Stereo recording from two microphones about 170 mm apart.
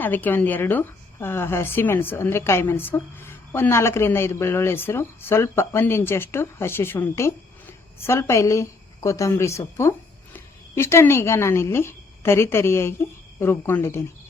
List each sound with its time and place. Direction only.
0.0 s speech: 10° left (ahead or behind)